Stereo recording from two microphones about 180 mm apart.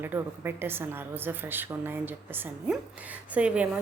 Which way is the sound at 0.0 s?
10° right (ahead or behind).